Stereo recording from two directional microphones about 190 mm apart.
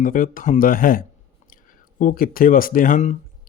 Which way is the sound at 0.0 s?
45° left (ahead or behind).